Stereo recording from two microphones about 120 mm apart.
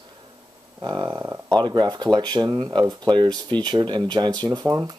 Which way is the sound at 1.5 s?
35° right (ahead or behind).